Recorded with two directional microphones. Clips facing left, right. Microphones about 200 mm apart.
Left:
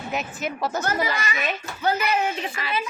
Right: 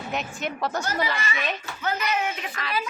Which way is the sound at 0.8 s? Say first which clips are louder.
Left 2 dB; 45° left (ahead or behind).